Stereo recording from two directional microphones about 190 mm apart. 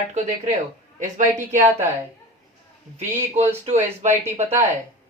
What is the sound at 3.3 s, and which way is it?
Speech, 35° right (ahead or behind).